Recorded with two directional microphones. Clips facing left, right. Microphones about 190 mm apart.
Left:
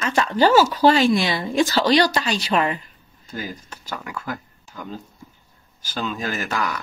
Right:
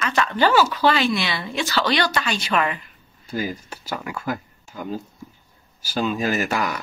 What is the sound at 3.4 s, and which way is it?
Speech, 10° right (ahead or behind).